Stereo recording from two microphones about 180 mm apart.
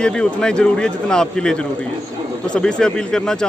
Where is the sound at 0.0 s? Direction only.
5° left (ahead or behind).